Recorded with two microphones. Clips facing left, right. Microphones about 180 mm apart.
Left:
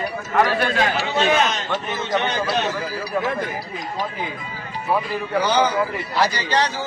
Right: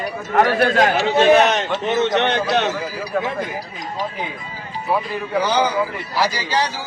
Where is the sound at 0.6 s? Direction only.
45° right (ahead or behind).